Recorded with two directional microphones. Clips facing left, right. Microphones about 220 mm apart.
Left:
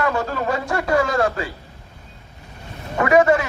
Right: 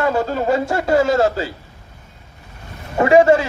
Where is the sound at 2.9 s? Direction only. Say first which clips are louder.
Right 4 dB; 25° right (ahead or behind).